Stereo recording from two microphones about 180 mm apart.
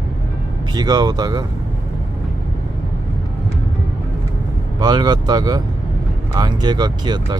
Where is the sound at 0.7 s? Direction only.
25° right (ahead or behind).